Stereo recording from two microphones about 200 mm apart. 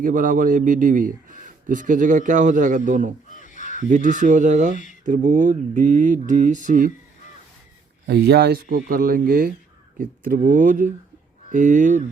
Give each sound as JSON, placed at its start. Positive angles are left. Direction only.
{"t": 0.0, "sound": "a man's voice", "side_deg": -40}
{"t": 3.2, "sound": "crow", "side_deg": 40}
{"t": 3.8, "sound": "a man's voice", "side_deg": -40}
{"t": 8.0, "sound": "a man's voice", "side_deg": -55}